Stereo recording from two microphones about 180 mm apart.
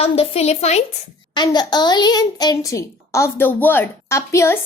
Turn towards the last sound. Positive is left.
turn(degrees=15)  # may be behind; listen again after turning